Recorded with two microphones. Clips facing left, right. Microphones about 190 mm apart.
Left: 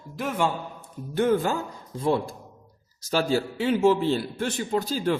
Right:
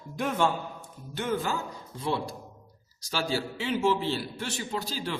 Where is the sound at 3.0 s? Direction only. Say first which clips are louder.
Left 6 dB; 45° left (ahead or behind).